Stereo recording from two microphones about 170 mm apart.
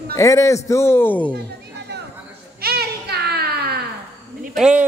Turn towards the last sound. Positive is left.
turn(degrees=-5)  # may be behind; listen again after turning